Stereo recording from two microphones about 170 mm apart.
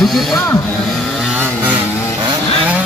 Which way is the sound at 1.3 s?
10° right (ahead or behind).